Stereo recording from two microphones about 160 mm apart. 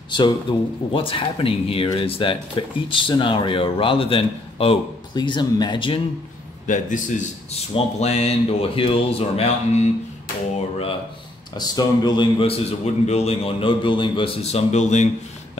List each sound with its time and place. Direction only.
0.1 s speech: 30° left (ahead or behind)
6.7 s a man's voice: 50° left (ahead or behind)
7.7 s speech: 40° left (ahead or behind)
11.5 s speech: 25° left (ahead or behind); by 15.0 s 45° left (ahead or behind)